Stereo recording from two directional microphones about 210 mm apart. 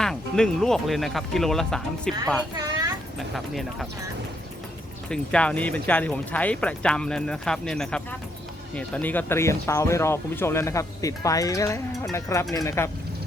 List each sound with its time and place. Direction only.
0.0 s speech: 5° left (ahead or behind)
2.6 s a sound: 20° right (ahead or behind)
3.3 s speech: centre (ahead or behind)
5.0 s speech: 5° left (ahead or behind)